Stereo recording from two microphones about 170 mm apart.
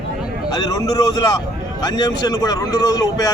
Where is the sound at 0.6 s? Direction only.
20° left (ahead or behind).